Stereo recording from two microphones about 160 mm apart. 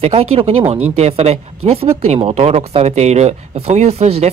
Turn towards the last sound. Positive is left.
turn(degrees=-40)  # may be behind; listen again after turning